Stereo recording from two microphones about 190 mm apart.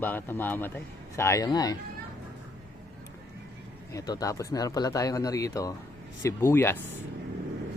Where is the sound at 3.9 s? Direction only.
20° left (ahead or behind).